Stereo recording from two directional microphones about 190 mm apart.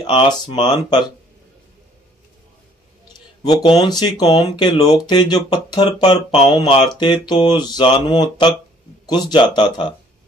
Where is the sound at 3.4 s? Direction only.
25° left (ahead or behind).